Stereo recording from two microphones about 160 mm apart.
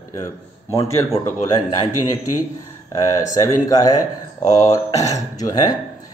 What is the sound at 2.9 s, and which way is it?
Speech, 20° left (ahead or behind).